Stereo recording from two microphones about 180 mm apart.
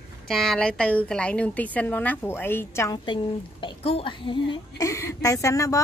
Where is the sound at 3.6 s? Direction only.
30° left (ahead or behind).